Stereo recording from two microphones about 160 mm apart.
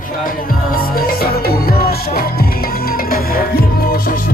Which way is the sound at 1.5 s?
70° left (ahead or behind).